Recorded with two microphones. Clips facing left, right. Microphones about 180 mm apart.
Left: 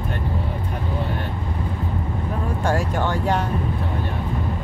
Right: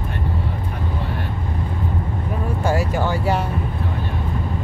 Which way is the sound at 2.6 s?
10° right (ahead or behind).